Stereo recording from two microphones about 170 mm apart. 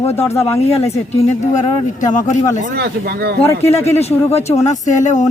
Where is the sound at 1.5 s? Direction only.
45° left (ahead or behind).